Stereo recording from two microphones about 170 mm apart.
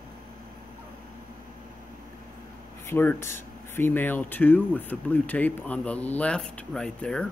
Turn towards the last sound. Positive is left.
turn(degrees=5)  # may be behind; listen again after turning